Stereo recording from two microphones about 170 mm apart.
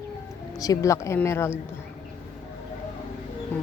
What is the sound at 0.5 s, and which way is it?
Speech, 20° left (ahead or behind).